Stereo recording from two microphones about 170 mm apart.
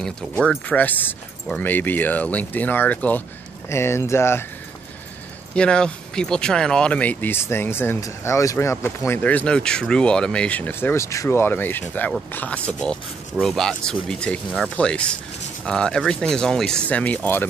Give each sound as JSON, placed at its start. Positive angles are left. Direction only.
{"t": 0.0, "sound": "speech", "side_deg": 5}
{"t": 5.5, "sound": "speech", "side_deg": 5}